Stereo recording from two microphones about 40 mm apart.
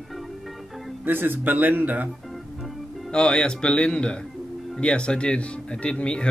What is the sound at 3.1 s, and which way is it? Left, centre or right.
Speech, left.